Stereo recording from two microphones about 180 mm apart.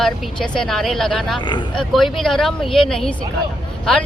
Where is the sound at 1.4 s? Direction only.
25° left (ahead or behind).